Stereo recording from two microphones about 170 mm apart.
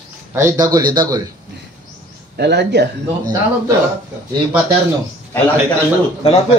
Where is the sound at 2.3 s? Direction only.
80° right.